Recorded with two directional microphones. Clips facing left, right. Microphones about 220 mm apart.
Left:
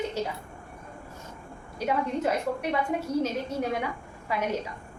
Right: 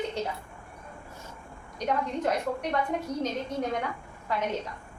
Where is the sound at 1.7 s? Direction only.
5° left (ahead or behind).